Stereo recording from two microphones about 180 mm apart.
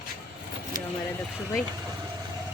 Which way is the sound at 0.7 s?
50° right (ahead or behind).